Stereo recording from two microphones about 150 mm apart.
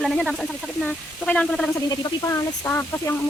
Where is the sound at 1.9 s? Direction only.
25° left (ahead or behind).